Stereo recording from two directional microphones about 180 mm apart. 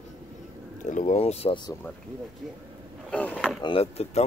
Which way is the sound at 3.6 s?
30° left (ahead or behind).